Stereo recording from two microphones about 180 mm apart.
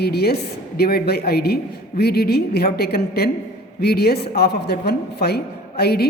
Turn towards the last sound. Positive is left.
turn(degrees=60)  # may be behind; listen again after turning